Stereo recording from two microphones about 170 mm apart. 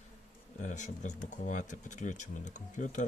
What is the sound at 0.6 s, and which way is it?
Speech, 45° left (ahead or behind).